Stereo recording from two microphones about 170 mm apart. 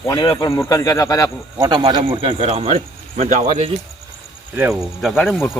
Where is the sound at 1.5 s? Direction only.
25° right (ahead or behind); by 3.7 s 45° right (ahead or behind).